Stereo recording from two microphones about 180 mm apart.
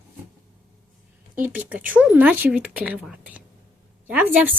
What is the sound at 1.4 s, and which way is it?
Speech, 10° right (ahead or behind).